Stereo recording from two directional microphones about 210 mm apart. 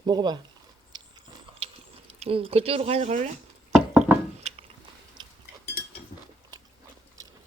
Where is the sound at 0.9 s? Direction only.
20° right (ahead or behind).